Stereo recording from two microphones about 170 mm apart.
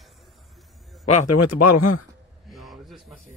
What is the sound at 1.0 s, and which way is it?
Speech, 40° left (ahead or behind).